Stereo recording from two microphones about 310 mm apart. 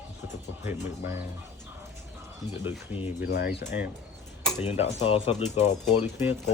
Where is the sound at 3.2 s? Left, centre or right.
Left.